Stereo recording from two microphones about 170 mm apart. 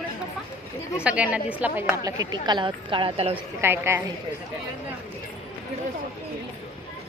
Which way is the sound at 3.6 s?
15° right (ahead or behind).